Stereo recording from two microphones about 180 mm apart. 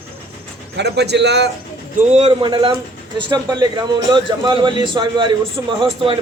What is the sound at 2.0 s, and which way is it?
A man's voice, 35° right (ahead or behind).